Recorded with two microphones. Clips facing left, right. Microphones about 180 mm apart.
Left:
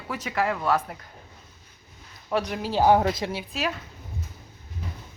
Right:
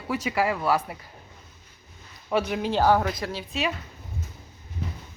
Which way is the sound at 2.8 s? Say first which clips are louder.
Left 4 dB; 25° left (ahead or behind).